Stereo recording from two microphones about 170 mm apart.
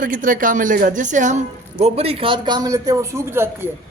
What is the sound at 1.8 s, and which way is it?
A man's voice, 35° right (ahead or behind).